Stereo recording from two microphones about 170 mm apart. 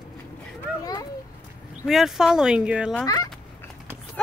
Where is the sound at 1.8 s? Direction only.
Centre (ahead or behind).